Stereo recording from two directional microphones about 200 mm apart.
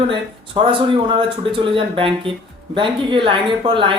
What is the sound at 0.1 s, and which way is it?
Speech, 25° right (ahead or behind).